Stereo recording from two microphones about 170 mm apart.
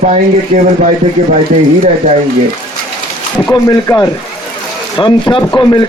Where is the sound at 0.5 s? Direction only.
50° right (ahead or behind).